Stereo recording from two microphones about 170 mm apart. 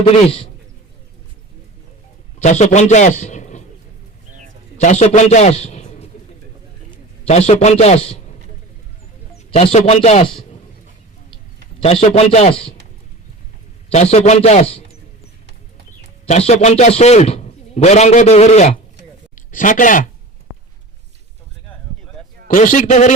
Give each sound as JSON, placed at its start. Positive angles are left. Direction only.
{"t": 0.0, "sound": "a man's voice", "side_deg": 35}
{"t": 2.4, "sound": "a man's voice", "side_deg": 45}
{"t": 4.3, "sound": "a sound", "side_deg": -50}
{"t": 4.8, "sound": "a man's voice", "side_deg": 45}
{"t": 7.3, "sound": "a man's voice", "side_deg": 40}
{"t": 9.5, "sound": "a man's voice", "side_deg": 35}
{"t": 11.8, "sound": "a man's voice", "side_deg": 35}
{"t": 13.9, "sound": "a man's voice", "side_deg": 40}
{"t": 16.2, "sound": "a man's voice", "side_deg": 40}
{"t": 19.4, "sound": "speech", "side_deg": 50}
{"t": 22.4, "sound": "a man's voice", "side_deg": 50}